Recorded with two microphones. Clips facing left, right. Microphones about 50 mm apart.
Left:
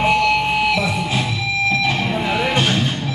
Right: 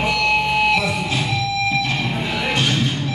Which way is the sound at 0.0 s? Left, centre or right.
Left.